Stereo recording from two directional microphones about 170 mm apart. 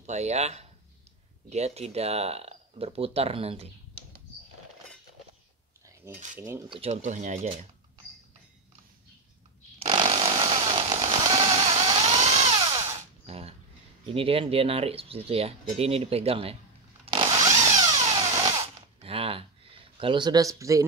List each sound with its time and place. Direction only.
0.0 s speech: 40° right (ahead or behind)
6.4 s speech: 20° right (ahead or behind)
6.8 s speech: 45° right (ahead or behind)
9.8 s chainsaw: 30° right (ahead or behind)
13.3 s a sound: 35° right (ahead or behind)
14.0 s speech: 35° right (ahead or behind)
17.0 s power tool: 30° right (ahead or behind)
17.6 s a sound: 25° right (ahead or behind)
18.2 s drill: 25° right (ahead or behind)